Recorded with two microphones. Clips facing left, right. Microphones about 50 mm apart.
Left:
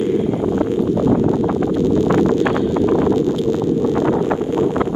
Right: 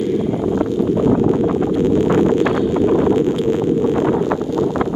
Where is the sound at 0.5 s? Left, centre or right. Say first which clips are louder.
Even; left.